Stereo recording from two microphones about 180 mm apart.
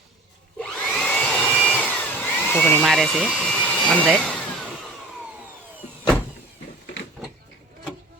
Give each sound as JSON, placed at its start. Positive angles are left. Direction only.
{"t": 0.7, "sound": "vacuum cleaner", "side_deg": 5}
{"t": 1.6, "sound": "a sound", "side_deg": 10}
{"t": 4.0, "sound": "speech", "side_deg": 0}